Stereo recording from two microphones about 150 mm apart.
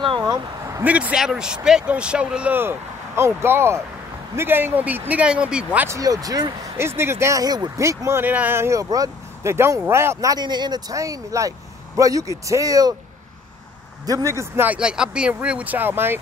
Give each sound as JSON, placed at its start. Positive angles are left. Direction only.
{"t": 0.3, "sound": "vehicle", "side_deg": -20}
{"t": 0.8, "sound": "speech", "side_deg": -10}
{"t": 5.9, "sound": "speech", "side_deg": -25}
{"t": 14.0, "sound": "speech", "side_deg": -20}